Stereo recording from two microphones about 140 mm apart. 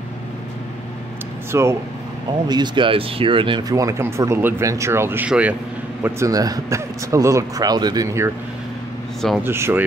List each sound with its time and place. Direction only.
1.5 s speech: 20° right (ahead or behind)
2.4 s speech: 30° right (ahead or behind); by 5.6 s 10° right (ahead or behind)
6.0 s speech: 20° right (ahead or behind)
9.4 s speech: 15° right (ahead or behind)